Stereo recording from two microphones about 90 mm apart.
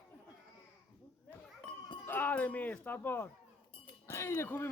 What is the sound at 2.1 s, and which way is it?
Speech, 20° left (ahead or behind).